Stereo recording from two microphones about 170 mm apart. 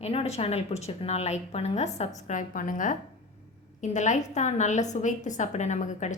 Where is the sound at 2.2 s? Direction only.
50° left (ahead or behind).